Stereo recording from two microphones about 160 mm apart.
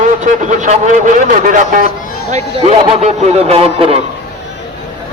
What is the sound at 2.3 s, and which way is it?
A man's voice, 45° right (ahead or behind).